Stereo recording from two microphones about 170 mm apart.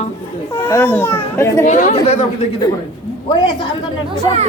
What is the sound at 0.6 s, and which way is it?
A child's voice, 15° left (ahead or behind).